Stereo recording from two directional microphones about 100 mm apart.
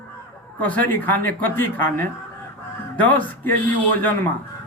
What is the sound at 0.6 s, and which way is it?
A woman's voice, 15° left (ahead or behind).